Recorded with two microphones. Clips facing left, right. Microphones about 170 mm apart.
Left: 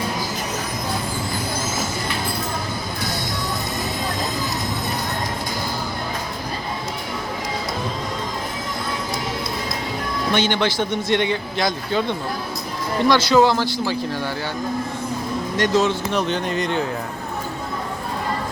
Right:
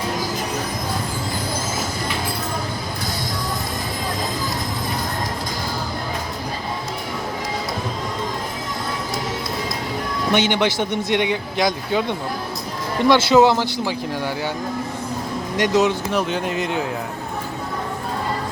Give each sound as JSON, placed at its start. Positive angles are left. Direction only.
{"t": 10.3, "sound": "a man's voice", "side_deg": -15}
{"t": 13.1, "sound": "speech", "side_deg": -25}
{"t": 15.5, "sound": "a man's voice", "side_deg": -15}